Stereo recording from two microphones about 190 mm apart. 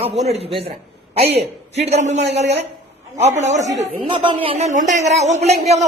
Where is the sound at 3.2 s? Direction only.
40° right (ahead or behind).